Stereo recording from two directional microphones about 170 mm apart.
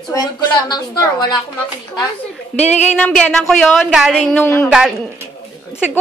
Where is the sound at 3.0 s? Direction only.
5° left (ahead or behind).